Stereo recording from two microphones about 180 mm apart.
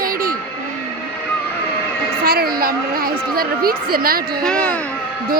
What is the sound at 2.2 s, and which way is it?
A woman's voice, 55° right (ahead or behind).